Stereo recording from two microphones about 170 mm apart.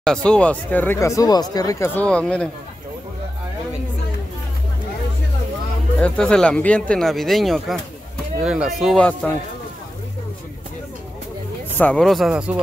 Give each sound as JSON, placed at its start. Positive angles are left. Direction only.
{"t": 0.0, "sound": "speech", "side_deg": 5}
{"t": 2.0, "sound": "speech", "side_deg": 5}
{"t": 5.9, "sound": "speech", "side_deg": 5}
{"t": 11.8, "sound": "speech", "side_deg": 5}